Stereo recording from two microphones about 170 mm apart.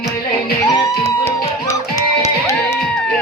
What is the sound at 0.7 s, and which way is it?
Music, 20° left (ahead or behind).